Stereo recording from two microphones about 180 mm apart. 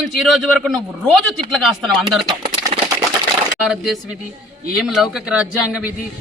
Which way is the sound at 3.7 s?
5° right (ahead or behind).